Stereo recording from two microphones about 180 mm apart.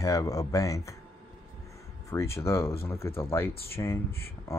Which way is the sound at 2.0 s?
15° left (ahead or behind).